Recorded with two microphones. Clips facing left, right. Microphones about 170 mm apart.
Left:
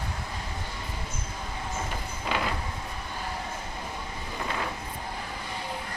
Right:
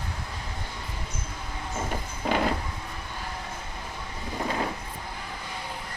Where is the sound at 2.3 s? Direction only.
45° right (ahead or behind).